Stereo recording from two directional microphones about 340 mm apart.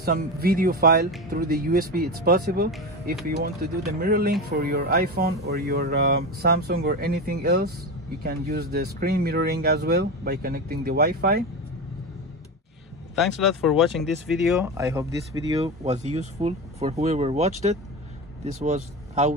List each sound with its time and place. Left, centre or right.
0.0 s speech: right
13.1 s speech: centre